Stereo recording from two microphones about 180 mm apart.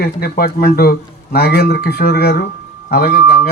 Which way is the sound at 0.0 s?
60° left (ahead or behind).